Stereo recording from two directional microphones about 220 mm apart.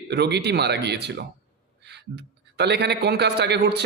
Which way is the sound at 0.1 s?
50° right (ahead or behind).